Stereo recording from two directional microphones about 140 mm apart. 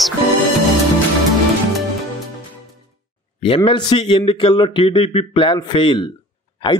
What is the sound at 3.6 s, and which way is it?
A man's voice, 35° left (ahead or behind).